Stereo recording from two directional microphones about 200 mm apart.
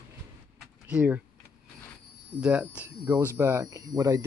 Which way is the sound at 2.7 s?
10° right (ahead or behind).